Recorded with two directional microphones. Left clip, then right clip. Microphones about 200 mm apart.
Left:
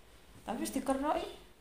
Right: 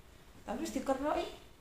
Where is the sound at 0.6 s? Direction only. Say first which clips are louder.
Left 1 dB; 45° left (ahead or behind).